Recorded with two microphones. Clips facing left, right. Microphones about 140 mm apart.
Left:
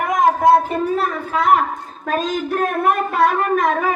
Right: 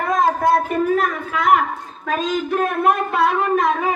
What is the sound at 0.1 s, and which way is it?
A woman's voice, 20° left (ahead or behind).